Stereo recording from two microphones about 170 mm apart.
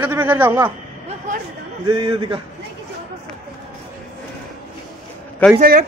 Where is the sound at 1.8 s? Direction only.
25° right (ahead or behind).